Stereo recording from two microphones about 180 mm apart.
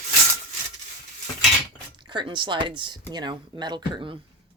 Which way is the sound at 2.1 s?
25° right (ahead or behind).